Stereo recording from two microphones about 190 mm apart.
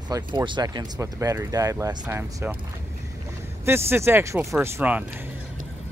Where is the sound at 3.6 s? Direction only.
10° right (ahead or behind).